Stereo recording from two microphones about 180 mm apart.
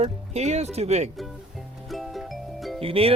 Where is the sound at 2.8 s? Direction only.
30° right (ahead or behind).